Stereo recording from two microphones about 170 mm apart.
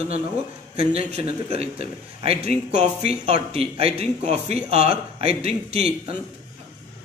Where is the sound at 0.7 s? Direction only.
40° right (ahead or behind).